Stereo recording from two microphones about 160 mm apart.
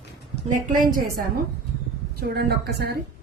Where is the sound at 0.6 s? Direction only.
60° right (ahead or behind).